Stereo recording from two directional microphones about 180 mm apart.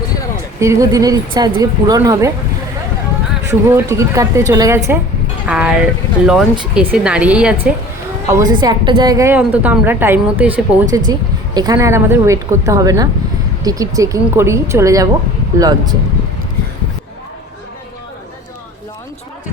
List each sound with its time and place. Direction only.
0.6 s speech: 15° right (ahead or behind)
3.5 s a woman's voice: 15° right (ahead or behind)
5.5 s speech: 5° right (ahead or behind)
8.3 s a woman's voice: 20° right (ahead or behind)
10.9 s a woman's voice: 20° right (ahead or behind)